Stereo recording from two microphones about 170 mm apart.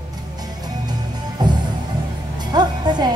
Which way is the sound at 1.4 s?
25° right (ahead or behind).